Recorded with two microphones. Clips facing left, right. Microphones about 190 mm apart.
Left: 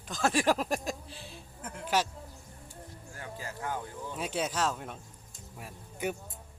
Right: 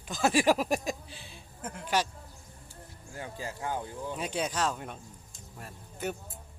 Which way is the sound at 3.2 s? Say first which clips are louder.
Right 2 dB; 20° right (ahead or behind).